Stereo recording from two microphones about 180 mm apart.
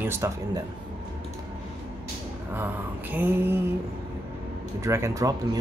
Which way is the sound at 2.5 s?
10° right (ahead or behind).